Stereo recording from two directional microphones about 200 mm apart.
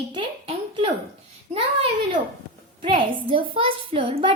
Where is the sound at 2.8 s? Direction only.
25° right (ahead or behind).